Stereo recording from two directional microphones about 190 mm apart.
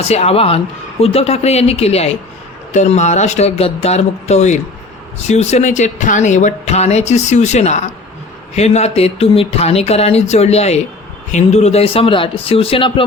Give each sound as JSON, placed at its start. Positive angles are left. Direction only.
{"t": 0.1, "sound": "speech", "side_deg": 35}